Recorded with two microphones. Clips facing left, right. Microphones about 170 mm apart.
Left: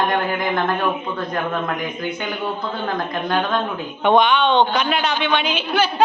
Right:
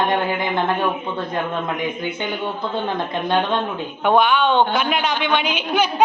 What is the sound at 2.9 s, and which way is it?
Speech, 25° right (ahead or behind).